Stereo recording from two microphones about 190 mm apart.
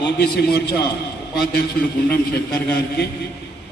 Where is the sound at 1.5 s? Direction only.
55° left (ahead or behind).